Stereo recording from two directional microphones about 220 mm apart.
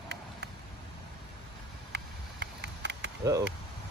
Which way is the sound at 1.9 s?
50° right (ahead or behind).